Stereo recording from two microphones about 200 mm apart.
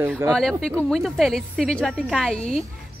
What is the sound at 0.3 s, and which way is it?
Speech, centre (ahead or behind).